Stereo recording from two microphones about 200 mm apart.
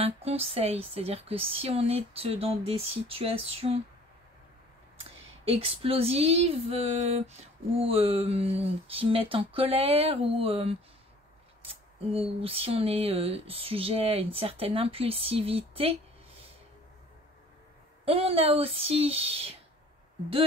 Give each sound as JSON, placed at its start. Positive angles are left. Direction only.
{"t": 0.0, "sound": "female singing", "side_deg": -30}
{"t": 5.4, "sound": "female singing", "side_deg": -30}
{"t": 18.0, "sound": "female singing", "side_deg": -30}